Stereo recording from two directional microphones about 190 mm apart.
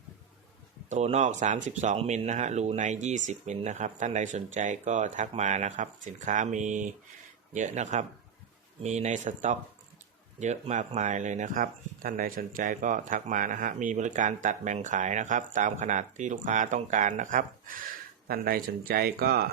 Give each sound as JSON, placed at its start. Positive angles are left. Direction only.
{"t": 0.9, "sound": "speech", "side_deg": -35}